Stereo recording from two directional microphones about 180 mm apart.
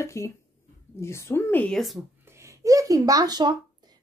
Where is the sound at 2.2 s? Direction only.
15° right (ahead or behind).